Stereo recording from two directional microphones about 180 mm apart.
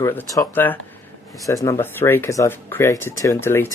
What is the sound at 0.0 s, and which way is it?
Speech, 15° left (ahead or behind).